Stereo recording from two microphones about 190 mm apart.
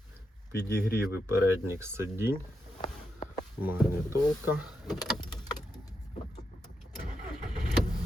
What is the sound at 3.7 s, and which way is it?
Speech, 10° right (ahead or behind).